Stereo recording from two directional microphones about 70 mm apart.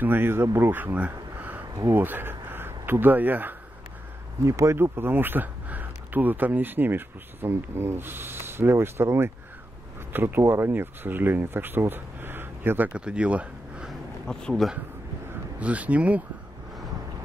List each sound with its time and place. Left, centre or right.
0.0 s speech: right
4.5 s speech: right
4.7 s speech: right; by 13.8 s centre
14.2 s speech: centre
15.6 s speech: right